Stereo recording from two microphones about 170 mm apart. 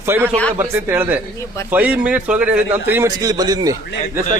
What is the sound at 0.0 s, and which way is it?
A man's voice, 15° right (ahead or behind).